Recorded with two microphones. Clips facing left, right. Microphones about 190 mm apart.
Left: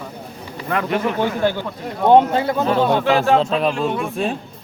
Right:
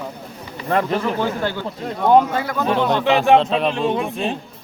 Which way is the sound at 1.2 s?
15° left (ahead or behind).